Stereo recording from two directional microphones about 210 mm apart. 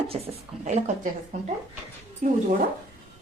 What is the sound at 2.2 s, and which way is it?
Speech, 35° right (ahead or behind).